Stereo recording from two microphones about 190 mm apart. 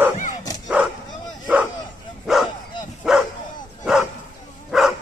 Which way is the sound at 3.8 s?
Centre (ahead or behind).